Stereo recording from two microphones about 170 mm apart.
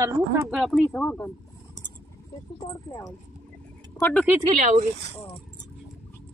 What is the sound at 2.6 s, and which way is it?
Speech, 20° left (ahead or behind).